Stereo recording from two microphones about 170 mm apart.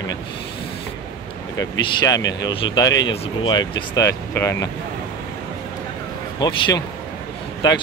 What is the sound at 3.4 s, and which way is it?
Speech, 25° left (ahead or behind).